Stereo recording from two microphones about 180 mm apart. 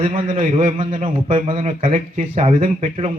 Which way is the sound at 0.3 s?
35° right (ahead or behind).